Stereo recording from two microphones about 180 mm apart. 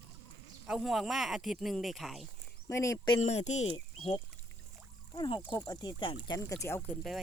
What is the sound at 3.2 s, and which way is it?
Speech, 40° left (ahead or behind).